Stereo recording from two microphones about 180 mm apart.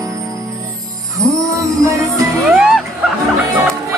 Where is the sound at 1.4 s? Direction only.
15° right (ahead or behind).